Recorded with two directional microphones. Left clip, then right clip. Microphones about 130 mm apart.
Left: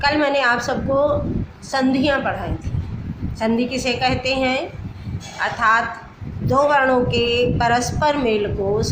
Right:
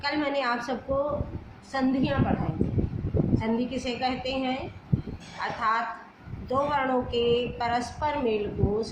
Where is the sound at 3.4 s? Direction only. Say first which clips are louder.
Left 9 dB; 40° left (ahead or behind).